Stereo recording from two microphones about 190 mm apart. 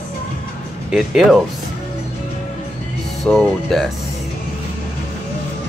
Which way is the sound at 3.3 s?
Centre (ahead or behind).